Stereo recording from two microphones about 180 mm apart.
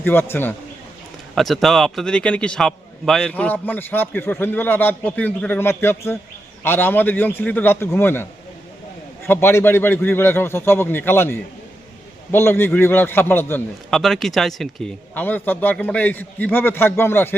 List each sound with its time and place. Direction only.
0.0 s a man's voice: 10° left (ahead or behind)
1.4 s a man's voice: centre (ahead or behind)